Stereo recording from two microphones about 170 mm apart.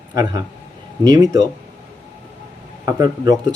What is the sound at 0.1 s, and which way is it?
Speech, 20° right (ahead or behind).